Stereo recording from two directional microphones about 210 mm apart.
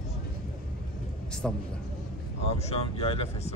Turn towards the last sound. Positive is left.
turn(degrees=25)  # may be behind; listen again after turning